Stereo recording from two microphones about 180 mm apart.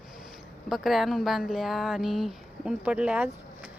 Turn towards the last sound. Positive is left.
turn(degrees=-5)  # may be behind; listen again after turning